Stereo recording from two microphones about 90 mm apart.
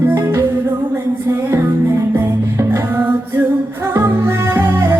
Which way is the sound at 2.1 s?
30° right (ahead or behind).